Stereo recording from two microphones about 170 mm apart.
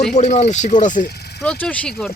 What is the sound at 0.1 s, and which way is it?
Speech, 45° left (ahead or behind).